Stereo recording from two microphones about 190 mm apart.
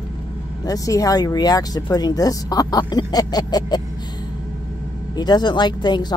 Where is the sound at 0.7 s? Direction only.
20° left (ahead or behind).